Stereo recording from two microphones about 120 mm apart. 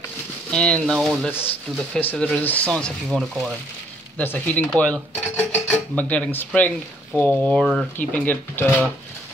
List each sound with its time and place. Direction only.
0.5 s speech: 5° left (ahead or behind)
2.0 s speech: 15° left (ahead or behind); by 3.5 s centre (ahead or behind)
4.2 s speech: 15° left (ahead or behind)
8.0 s speech: 15° left (ahead or behind)